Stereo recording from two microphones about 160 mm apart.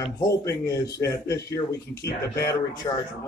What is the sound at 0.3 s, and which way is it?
A man's voice, 20° left (ahead or behind).